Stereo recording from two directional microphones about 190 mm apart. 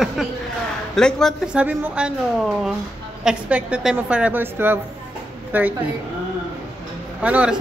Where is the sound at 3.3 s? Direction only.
5° right (ahead or behind).